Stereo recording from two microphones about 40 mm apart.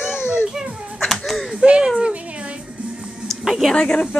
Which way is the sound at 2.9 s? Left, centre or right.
Right.